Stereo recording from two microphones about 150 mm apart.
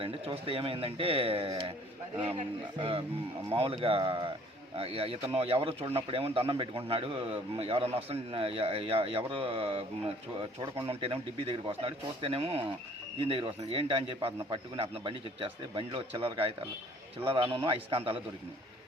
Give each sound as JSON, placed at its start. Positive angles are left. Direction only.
{"t": 0.0, "sound": "speech", "side_deg": -40}
{"t": 2.7, "sound": "speech", "side_deg": -35}